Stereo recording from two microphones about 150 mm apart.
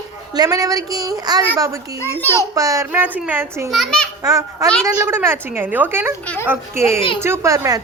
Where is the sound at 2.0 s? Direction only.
15° left (ahead or behind).